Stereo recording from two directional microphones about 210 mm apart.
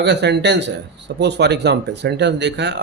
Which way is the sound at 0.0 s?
55° right (ahead or behind).